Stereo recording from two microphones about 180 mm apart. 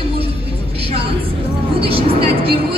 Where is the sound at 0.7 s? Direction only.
30° right (ahead or behind).